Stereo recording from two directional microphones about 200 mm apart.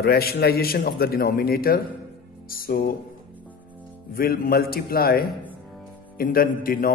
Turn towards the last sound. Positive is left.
turn(degrees=45)  # may be behind; listen again after turning